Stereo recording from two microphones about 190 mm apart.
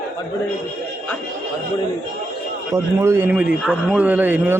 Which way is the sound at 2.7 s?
15° right (ahead or behind).